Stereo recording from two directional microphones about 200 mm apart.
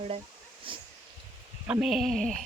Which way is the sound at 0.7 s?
25° right (ahead or behind).